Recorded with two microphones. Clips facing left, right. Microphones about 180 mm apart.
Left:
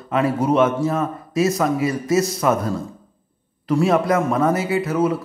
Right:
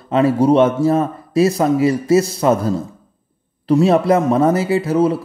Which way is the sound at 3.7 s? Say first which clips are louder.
Right 4 dB; 30° right (ahead or behind).